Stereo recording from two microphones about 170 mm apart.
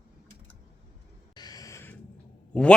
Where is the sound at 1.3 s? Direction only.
20° left (ahead or behind).